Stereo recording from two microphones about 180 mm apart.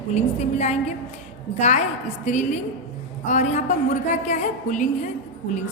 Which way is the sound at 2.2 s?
40° left (ahead or behind).